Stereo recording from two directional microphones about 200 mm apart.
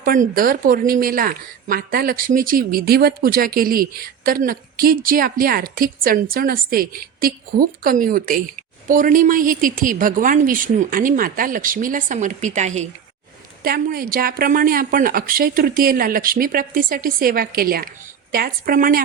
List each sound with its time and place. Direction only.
0.0 s speech: 45° right (ahead or behind)
13.7 s speech: 50° right (ahead or behind)